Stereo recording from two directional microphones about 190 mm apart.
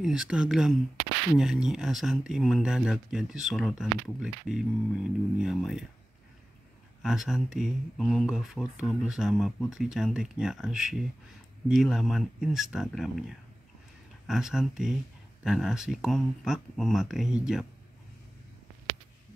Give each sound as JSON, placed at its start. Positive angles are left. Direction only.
{"t": 0.0, "sound": "speech", "side_deg": -5}
{"t": 7.0, "sound": "speech", "side_deg": 0}